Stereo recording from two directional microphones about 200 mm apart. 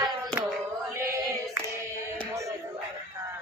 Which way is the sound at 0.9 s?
15° right (ahead or behind).